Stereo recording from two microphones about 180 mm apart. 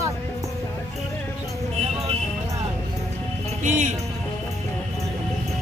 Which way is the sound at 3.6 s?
45° right (ahead or behind).